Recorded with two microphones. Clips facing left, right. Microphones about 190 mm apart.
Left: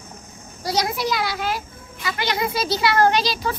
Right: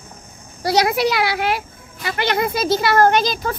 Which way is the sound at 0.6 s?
70° right (ahead or behind).